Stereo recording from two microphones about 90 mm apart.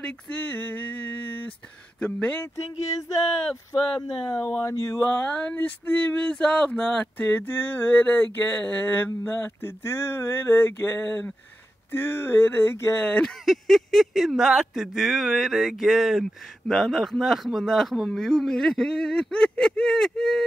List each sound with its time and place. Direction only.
0.0 s speech: 15° left (ahead or behind)
4.4 s speech: 30° left (ahead or behind)
5.3 s speech: 15° left (ahead or behind); by 12.9 s 30° left (ahead or behind)
13.0 s speech: 15° left (ahead or behind)
13.5 s speech: 5° left (ahead or behind)